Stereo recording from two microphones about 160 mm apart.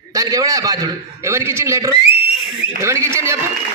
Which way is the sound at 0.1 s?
20° right (ahead or behind).